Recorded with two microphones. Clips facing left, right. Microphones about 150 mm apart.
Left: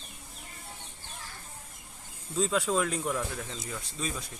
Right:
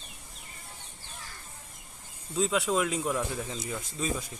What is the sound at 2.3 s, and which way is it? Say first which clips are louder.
Speech: right 1 dB; centre (ahead or behind).